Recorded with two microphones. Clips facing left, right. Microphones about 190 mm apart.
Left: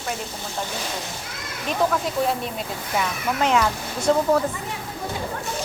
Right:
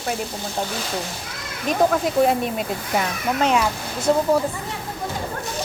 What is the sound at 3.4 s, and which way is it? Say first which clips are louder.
Speech: right 1 dB; 20° right (ahead or behind).